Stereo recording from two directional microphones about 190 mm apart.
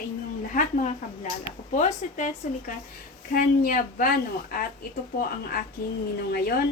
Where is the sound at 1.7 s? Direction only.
40° left (ahead or behind).